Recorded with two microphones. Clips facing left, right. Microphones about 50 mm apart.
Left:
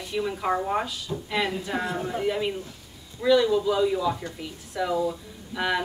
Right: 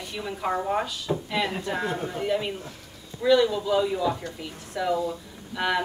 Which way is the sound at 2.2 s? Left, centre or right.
Centre.